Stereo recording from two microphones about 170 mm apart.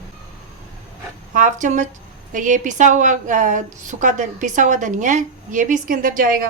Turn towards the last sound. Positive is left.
turn(degrees=-55)  # may be behind; listen again after turning